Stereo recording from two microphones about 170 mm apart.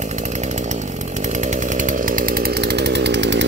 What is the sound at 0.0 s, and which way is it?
Chainsaw, 45° right (ahead or behind).